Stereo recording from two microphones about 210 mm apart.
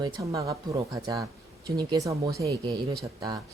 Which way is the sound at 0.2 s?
15° right (ahead or behind).